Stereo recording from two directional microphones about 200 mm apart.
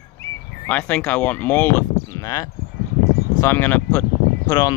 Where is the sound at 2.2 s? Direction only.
15° left (ahead or behind).